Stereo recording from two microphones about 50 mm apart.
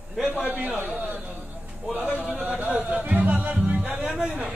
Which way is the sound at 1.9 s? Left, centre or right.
Centre.